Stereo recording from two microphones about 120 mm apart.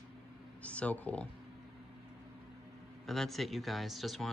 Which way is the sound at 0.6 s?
10° left (ahead or behind).